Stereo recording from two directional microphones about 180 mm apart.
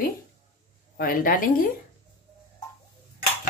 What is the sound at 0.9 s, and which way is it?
Speech, 50° left (ahead or behind).